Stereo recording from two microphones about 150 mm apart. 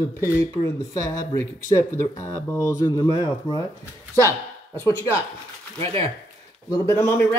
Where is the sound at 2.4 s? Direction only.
20° left (ahead or behind).